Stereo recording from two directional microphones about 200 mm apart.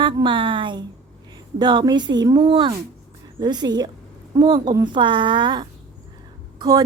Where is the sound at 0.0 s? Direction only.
25° right (ahead or behind).